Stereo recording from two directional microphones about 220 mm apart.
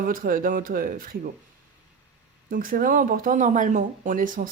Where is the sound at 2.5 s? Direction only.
40° right (ahead or behind).